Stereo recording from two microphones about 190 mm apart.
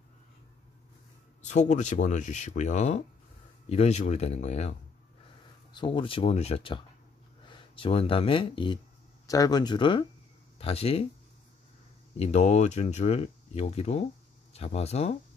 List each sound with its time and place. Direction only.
1.4 s speech: 40° left (ahead or behind)
5.7 s speech: 25° left (ahead or behind)
12.2 s speech: 35° left (ahead or behind)